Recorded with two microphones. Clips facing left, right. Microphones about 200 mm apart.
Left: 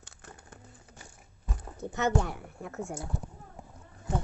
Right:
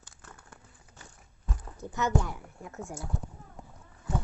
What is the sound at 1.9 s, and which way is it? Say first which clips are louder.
Speech: left 1 dB; 60° left (ahead or behind).